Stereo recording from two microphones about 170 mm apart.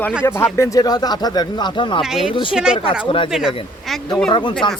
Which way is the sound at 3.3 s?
5° right (ahead or behind).